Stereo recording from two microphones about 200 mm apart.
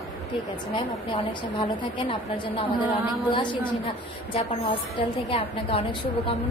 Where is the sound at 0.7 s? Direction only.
25° left (ahead or behind).